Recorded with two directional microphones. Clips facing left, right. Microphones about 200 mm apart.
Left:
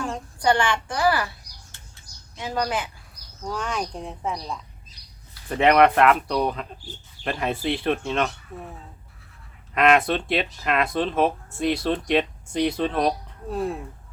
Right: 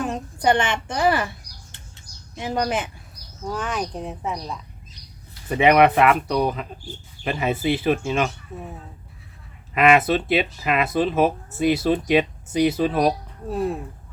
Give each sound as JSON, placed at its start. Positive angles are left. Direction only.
{"t": 0.4, "sound": "a woman's voice", "side_deg": -20}
{"t": 2.4, "sound": "a woman's voice", "side_deg": -20}
{"t": 3.4, "sound": "speech", "side_deg": -5}
{"t": 9.7, "sound": "speech", "side_deg": -5}